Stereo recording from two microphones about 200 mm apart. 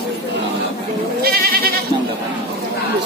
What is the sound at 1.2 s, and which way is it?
Goat, 50° right (ahead or behind).